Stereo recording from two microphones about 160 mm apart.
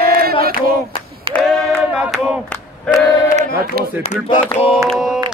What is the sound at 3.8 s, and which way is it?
Speech, 70° right (ahead or behind).